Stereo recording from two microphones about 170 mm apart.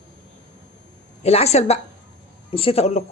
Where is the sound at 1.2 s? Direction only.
40° left (ahead or behind).